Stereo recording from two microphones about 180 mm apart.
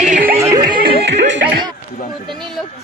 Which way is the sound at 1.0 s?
75° right (ahead or behind).